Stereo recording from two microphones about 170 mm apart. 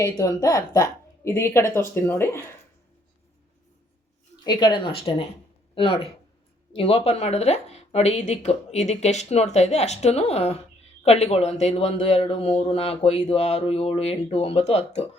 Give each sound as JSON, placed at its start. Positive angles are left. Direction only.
{"t": 0.0, "sound": "speech", "side_deg": 20}
{"t": 4.4, "sound": "a man's voice", "side_deg": 25}